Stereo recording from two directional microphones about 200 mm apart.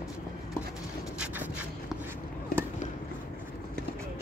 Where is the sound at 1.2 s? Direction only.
10° right (ahead or behind).